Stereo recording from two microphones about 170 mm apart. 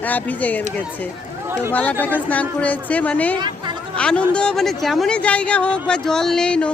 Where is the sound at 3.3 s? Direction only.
25° right (ahead or behind).